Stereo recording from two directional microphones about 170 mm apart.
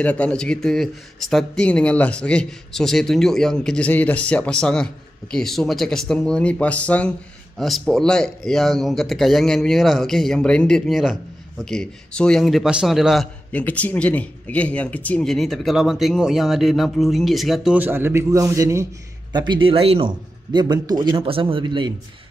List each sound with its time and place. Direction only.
0.0 s speech: 5° left (ahead or behind)
17.7 s a man's voice: 10° right (ahead or behind); by 21.9 s 30° right (ahead or behind)